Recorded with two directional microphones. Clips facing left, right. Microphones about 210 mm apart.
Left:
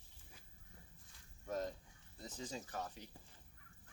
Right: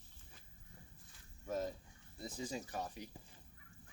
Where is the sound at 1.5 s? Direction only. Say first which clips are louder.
Right 2 dB; 5° right (ahead or behind).